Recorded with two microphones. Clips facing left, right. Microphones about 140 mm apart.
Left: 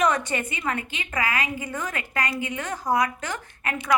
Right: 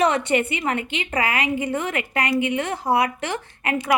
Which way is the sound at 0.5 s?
25° right (ahead or behind).